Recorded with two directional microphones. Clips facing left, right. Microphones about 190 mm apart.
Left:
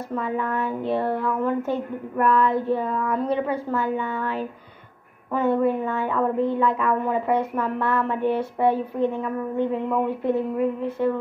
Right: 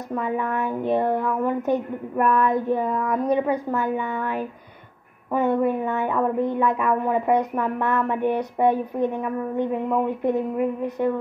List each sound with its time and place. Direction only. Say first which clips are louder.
0.1 s speech: right 1 dB; 15° right (ahead or behind)